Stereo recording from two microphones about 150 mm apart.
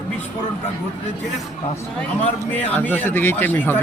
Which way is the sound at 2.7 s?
10° left (ahead or behind).